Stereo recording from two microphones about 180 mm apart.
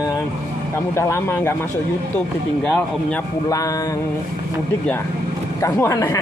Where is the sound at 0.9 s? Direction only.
15° left (ahead or behind).